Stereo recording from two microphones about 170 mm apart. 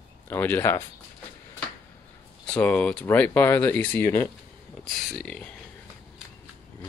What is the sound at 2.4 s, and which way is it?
Speech, 5° left (ahead or behind).